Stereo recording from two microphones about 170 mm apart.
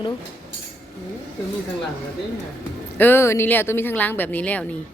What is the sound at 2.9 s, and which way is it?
Speech, 10° left (ahead or behind).